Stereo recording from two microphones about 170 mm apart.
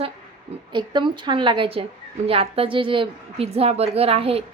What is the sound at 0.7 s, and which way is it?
A woman's voice, 25° right (ahead or behind).